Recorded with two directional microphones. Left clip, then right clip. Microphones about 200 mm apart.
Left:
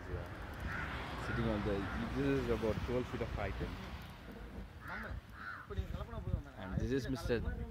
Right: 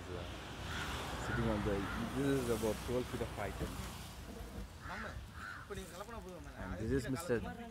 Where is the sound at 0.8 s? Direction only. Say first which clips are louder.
Right 1 dB; 30° left (ahead or behind).